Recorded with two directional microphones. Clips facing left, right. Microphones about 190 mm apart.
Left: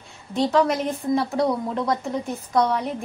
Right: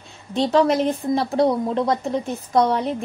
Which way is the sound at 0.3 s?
25° right (ahead or behind).